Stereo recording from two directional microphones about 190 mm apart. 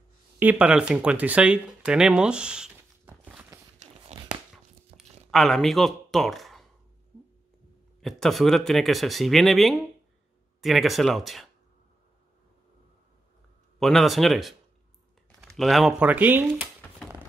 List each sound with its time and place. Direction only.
0.4 s speech: 5° right (ahead or behind)
3.3 s walk: 10° right (ahead or behind)
4.9 s a sound: 30° right (ahead or behind)
5.3 s speech: centre (ahead or behind)
8.0 s speech: centre (ahead or behind)
13.7 s speech: centre (ahead or behind)
15.5 s speech: centre (ahead or behind)